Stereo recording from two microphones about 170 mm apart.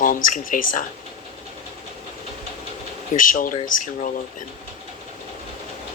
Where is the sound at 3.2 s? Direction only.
55° left (ahead or behind).